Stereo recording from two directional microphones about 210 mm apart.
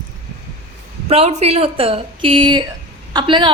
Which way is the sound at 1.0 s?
30° right (ahead or behind).